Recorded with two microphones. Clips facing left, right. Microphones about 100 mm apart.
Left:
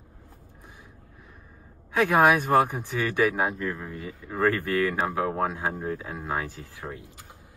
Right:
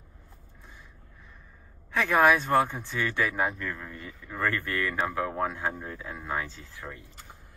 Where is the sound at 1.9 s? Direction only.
15° left (ahead or behind).